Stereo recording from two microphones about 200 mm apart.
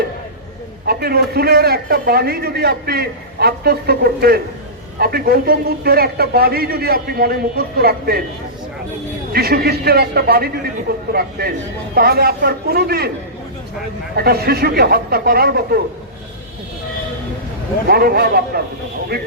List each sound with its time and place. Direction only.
0.9 s a man's voice: 50° right (ahead or behind)
9.3 s a man's voice: 50° right (ahead or behind)
14.2 s a man's voice: 50° right (ahead or behind)
17.8 s a man's voice: 50° right (ahead or behind)